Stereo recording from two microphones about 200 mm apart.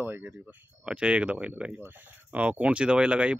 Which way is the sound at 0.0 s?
10° right (ahead or behind).